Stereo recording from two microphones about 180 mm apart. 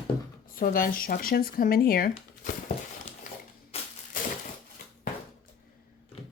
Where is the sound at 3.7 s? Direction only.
35° left (ahead or behind).